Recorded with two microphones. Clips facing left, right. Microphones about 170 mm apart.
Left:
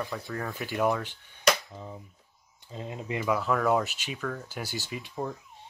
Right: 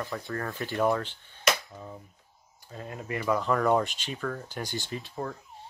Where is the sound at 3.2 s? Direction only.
5° left (ahead or behind).